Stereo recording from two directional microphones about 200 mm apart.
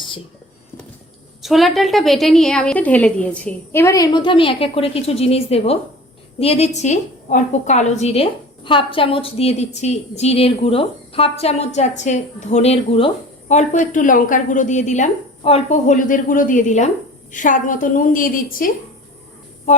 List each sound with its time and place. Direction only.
1.4 s a woman's voice: centre (ahead or behind); by 18.7 s 45° left (ahead or behind)